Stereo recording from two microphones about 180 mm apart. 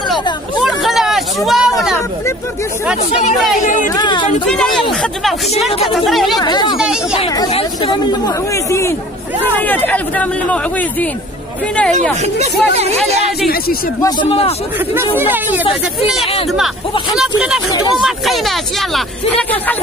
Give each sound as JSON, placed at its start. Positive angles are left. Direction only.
{"t": 0.6, "sound": "a sound", "side_deg": 0}
{"t": 3.6, "sound": "speech", "side_deg": 45}
{"t": 3.9, "sound": "speech", "side_deg": 25}
{"t": 4.5, "sound": "speech", "side_deg": 5}
{"t": 5.9, "sound": "speech", "side_deg": 0}
{"t": 6.4, "sound": "speech", "side_deg": 25}
{"t": 6.8, "sound": "speech", "side_deg": -5}
{"t": 7.3, "sound": "speech", "side_deg": 25}
{"t": 12.2, "sound": "speech", "side_deg": -35}
{"t": 15.1, "sound": "speech", "side_deg": -10}
{"t": 15.6, "sound": "speech", "side_deg": 30}
{"t": 17.6, "sound": "speech", "side_deg": 20}
{"t": 18.0, "sound": "speech", "side_deg": 0}